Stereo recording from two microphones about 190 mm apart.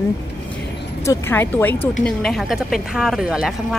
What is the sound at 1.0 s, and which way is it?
A woman's voice, 10° left (ahead or behind).